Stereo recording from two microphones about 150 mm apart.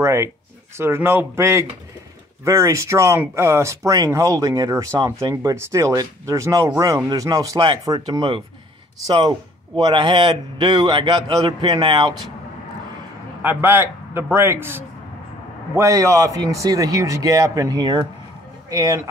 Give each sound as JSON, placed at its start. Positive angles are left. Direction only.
{"t": 0.0, "sound": "a man's voice", "side_deg": -20}
{"t": 9.8, "sound": "speech", "side_deg": -30}
{"t": 13.4, "sound": "a man's voice", "side_deg": -15}